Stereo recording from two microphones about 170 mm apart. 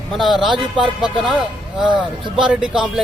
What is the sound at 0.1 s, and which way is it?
Speech, centre (ahead or behind).